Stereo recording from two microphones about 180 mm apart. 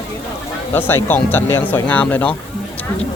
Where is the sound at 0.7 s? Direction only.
10° left (ahead or behind).